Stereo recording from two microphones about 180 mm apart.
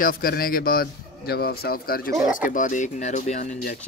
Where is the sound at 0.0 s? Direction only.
55° left (ahead or behind).